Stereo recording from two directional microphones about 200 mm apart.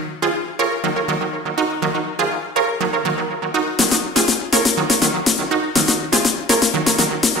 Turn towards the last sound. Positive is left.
turn(degrees=0)  # may be behind; listen again after turning